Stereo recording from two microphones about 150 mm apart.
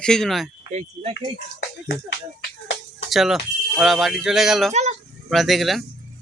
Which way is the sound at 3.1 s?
Centre (ahead or behind).